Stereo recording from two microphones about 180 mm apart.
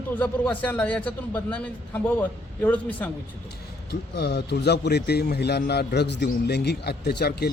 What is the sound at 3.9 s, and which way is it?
A man's voice, 65° left (ahead or behind).